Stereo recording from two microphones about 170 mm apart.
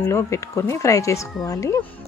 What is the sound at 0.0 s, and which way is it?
Speech, 15° left (ahead or behind).